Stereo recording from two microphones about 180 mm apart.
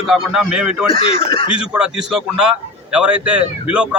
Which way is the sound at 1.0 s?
35° left (ahead or behind).